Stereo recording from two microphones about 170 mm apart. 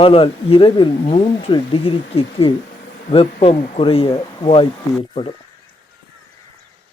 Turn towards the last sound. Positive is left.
turn(degrees=30)  # may be behind; listen again after turning